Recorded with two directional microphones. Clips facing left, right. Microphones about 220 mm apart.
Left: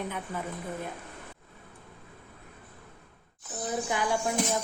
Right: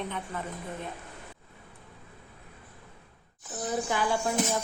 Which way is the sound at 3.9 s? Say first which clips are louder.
Even; 20° left (ahead or behind).